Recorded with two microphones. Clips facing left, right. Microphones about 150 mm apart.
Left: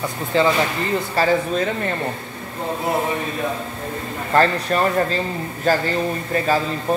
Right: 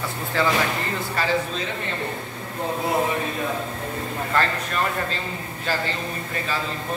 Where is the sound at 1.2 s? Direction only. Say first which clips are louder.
Left 7 dB; 35° left (ahead or behind).